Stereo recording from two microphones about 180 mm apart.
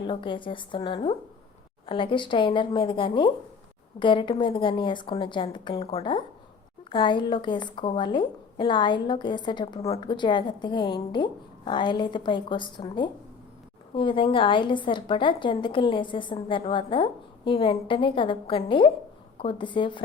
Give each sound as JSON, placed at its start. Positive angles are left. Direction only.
{"t": 0.1, "sound": "a woman's voice", "side_deg": 25}